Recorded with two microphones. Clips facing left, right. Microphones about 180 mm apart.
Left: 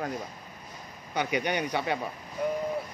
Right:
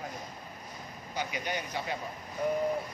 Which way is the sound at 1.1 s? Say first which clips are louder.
Left 7 dB; 65° left (ahead or behind).